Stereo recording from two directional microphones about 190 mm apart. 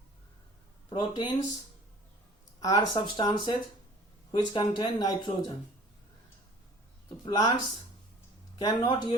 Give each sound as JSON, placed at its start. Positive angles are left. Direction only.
{"t": 0.9, "sound": "speech", "side_deg": 25}
{"t": 2.6, "sound": "speech", "side_deg": 20}
{"t": 7.3, "sound": "speech", "side_deg": 20}
{"t": 8.5, "sound": "speech", "side_deg": 20}